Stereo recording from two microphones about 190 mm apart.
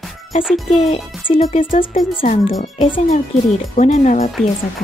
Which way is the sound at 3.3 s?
Centre (ahead or behind).